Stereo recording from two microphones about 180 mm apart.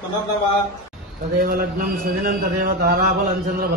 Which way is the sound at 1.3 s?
55° right (ahead or behind).